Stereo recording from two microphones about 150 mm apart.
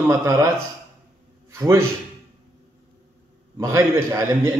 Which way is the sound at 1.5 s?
20° right (ahead or behind).